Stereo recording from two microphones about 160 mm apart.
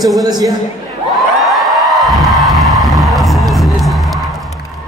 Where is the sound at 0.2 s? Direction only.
25° right (ahead or behind).